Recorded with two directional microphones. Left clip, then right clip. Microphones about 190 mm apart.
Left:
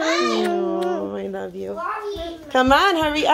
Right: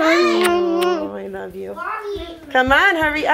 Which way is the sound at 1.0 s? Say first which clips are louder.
Even; 35° left (ahead or behind).